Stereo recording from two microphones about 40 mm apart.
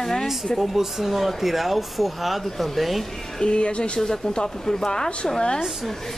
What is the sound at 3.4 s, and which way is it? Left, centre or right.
Speech, left.